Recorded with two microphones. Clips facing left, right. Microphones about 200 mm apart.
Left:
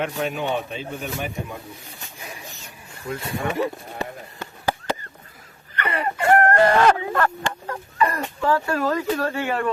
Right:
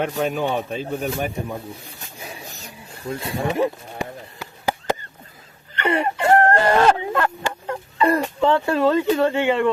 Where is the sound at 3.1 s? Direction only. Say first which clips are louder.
Right 2 dB; 25° right (ahead or behind).